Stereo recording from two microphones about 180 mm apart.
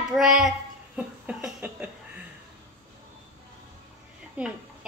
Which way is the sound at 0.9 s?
5° right (ahead or behind).